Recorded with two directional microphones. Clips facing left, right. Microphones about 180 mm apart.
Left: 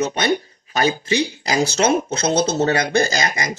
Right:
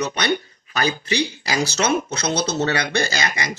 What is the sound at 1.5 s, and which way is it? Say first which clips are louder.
Speech: left 3 dB; 30° left (ahead or behind).